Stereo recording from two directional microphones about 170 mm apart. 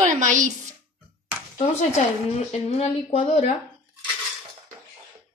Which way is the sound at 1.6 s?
40° left (ahead or behind).